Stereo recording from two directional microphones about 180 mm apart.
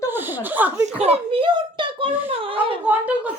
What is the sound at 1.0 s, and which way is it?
A child's voice, 30° right (ahead or behind).